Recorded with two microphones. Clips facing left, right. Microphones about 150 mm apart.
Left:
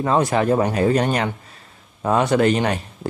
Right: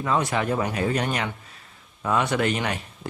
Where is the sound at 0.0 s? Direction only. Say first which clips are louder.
Left 6 dB; 40° left (ahead or behind).